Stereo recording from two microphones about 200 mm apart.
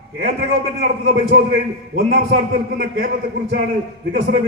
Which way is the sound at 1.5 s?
50° right (ahead or behind).